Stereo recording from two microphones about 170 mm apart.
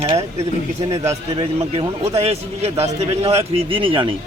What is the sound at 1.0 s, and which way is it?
A man's voice, 35° right (ahead or behind).